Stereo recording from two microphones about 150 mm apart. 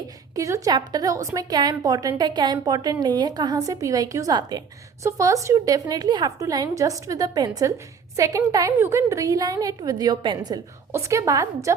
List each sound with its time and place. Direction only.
0.3 s a woman's voice: 20° right (ahead or behind)